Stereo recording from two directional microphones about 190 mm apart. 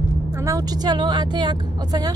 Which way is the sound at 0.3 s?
15° right (ahead or behind).